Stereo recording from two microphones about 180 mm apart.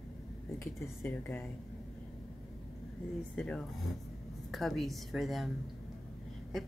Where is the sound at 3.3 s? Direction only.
5° left (ahead or behind).